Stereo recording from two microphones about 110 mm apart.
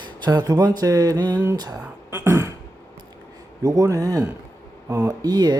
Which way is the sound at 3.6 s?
30° right (ahead or behind).